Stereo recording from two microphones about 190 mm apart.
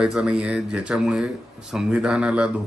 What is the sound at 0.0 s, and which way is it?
Speech, 5° right (ahead or behind).